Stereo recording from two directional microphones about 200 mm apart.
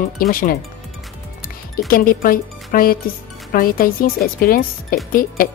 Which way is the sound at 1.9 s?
45° left (ahead or behind).